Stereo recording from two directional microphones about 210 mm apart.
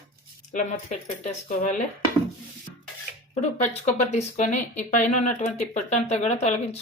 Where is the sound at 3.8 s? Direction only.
35° left (ahead or behind).